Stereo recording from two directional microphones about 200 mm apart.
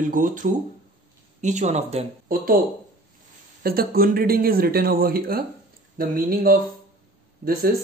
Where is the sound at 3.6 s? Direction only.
50° right (ahead or behind).